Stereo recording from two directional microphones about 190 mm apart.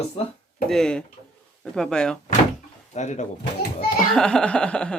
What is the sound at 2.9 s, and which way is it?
Speech, 40° left (ahead or behind).